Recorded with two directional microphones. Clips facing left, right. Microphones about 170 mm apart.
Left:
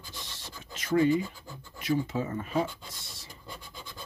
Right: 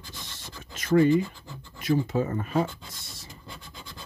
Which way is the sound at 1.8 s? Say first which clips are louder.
Right 4 dB; 45° right (ahead or behind).